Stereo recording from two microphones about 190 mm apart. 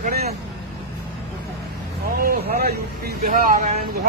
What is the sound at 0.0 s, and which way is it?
Vehicle, 55° right (ahead or behind).